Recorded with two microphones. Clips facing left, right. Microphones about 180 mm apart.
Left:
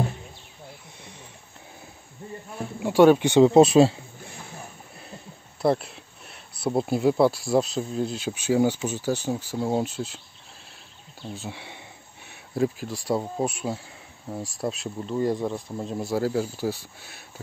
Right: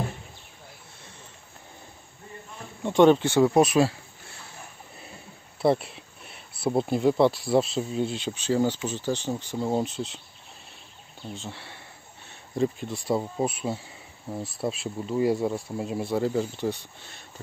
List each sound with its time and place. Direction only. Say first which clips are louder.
2.8 s speech: left 2 dB; 5° left (ahead or behind)
3.3 s speech: left 5 dB; 20° left (ahead or behind)
5.6 s speech: even; centre (ahead or behind)
11.3 s speech: left 2 dB; 10° left (ahead or behind)
12.3 s speech: left 1 dB; 5° left (ahead or behind)